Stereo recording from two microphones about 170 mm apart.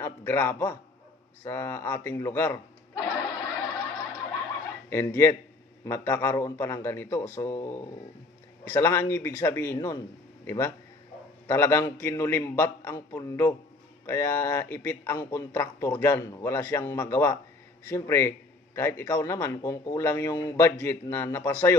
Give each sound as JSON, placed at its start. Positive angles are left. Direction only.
{"t": 0.0, "sound": "a man's voice", "side_deg": 15}
{"t": 4.8, "sound": "a man's voice", "side_deg": 15}
{"t": 11.4, "sound": "a man's voice", "side_deg": 15}